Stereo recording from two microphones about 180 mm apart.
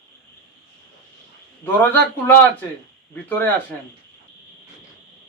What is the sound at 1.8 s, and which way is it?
Speech, 10° left (ahead or behind).